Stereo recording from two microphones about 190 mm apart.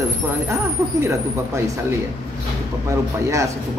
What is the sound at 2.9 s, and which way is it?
Speech, 15° right (ahead or behind).